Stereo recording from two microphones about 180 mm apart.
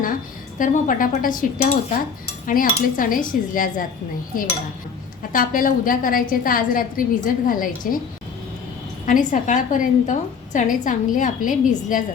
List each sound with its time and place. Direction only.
0.6 s a woman's voice: 50° left (ahead or behind)
5.3 s a woman's voice: 50° left (ahead or behind)
9.0 s a woman's voice: 45° left (ahead or behind)